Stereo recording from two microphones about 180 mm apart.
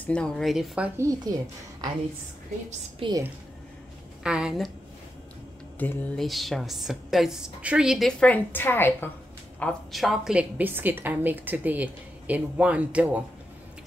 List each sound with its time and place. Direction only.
0.0 s a woman's voice: 5° left (ahead or behind); by 1.3 s 15° right (ahead or behind)
3.0 s a woman's voice: 20° right (ahead or behind)
4.2 s a woman's voice: 5° right (ahead or behind)
5.8 s a woman's voice: 5° left (ahead or behind)